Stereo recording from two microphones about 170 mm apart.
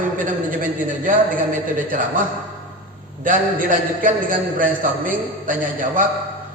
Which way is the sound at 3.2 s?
55° right (ahead or behind).